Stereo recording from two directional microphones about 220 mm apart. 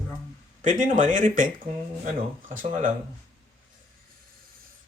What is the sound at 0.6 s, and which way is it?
Speech, 35° right (ahead or behind).